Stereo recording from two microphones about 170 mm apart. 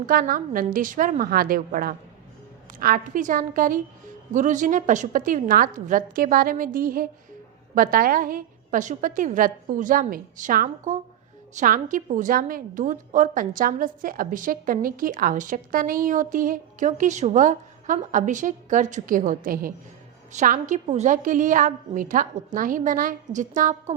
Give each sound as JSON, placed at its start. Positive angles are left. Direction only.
{"t": 0.0, "sound": "a woman's voice", "side_deg": -60}